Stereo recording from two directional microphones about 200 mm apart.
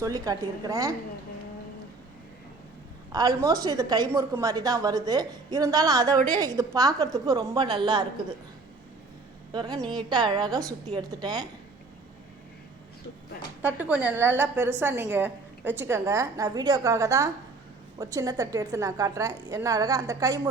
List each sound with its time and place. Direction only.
0.0 s a woman's voice: 15° right (ahead or behind)
3.1 s a woman's voice: 20° right (ahead or behind)
9.5 s a woman's voice: 20° right (ahead or behind)
13.6 s a woman's voice: 10° right (ahead or behind)